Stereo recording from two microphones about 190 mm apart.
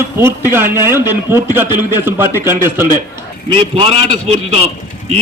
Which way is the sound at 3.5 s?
30° right (ahead or behind).